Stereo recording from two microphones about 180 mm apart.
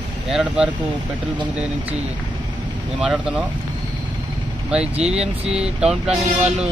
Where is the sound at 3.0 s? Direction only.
5° right (ahead or behind).